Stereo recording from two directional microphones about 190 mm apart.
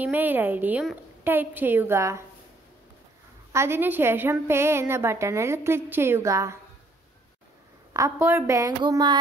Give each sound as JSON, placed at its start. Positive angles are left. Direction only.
{"t": 0.0, "sound": "a woman's voice", "side_deg": -10}
{"t": 3.5, "sound": "a woman's voice", "side_deg": -15}
{"t": 7.9, "sound": "a woman's voice", "side_deg": -15}